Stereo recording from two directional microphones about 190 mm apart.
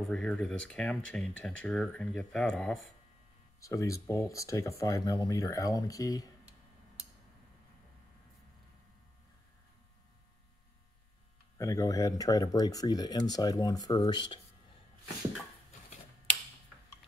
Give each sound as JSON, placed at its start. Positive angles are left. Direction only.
{"t": 0.1, "sound": "speech", "side_deg": 0}
{"t": 3.6, "sound": "speech", "side_deg": 15}
{"t": 11.5, "sound": "speech", "side_deg": 15}